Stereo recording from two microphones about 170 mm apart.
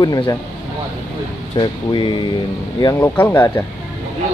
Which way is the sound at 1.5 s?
30° left (ahead or behind).